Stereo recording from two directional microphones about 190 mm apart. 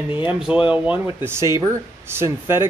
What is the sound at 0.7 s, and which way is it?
Speech, 10° right (ahead or behind).